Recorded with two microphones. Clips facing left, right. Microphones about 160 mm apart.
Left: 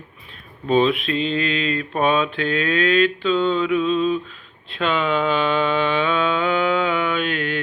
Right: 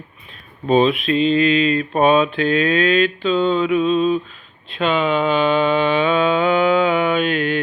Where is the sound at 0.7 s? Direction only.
15° right (ahead or behind).